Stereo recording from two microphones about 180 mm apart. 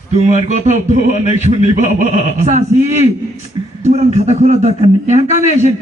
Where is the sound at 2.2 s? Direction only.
40° right (ahead or behind).